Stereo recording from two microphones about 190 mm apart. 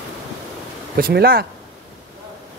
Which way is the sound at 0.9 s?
50° right (ahead or behind).